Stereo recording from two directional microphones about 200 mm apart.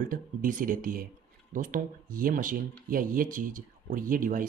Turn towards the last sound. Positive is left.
turn(degrees=-40)  # may be behind; listen again after turning